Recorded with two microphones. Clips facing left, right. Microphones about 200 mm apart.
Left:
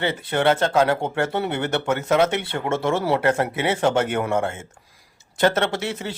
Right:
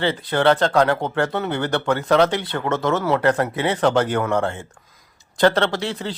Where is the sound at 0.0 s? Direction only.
25° left (ahead or behind).